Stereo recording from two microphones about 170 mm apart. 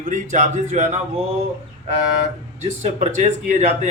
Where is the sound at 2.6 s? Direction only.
40° right (ahead or behind).